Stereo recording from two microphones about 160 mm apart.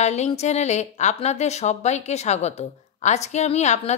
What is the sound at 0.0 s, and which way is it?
A woman's voice, 45° left (ahead or behind).